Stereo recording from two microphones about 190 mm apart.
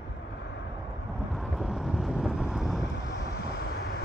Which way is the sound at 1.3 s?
Centre (ahead or behind).